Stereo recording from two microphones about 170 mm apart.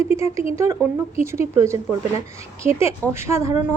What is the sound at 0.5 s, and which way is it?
A woman's voice, 15° right (ahead or behind).